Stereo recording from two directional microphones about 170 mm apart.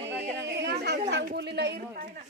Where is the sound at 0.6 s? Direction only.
85° right.